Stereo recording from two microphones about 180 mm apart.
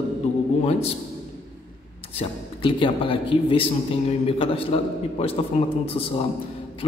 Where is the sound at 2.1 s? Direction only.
30° left (ahead or behind).